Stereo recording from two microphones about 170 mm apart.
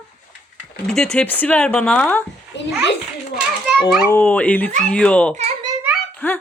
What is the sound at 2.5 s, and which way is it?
Children playing, 90° left.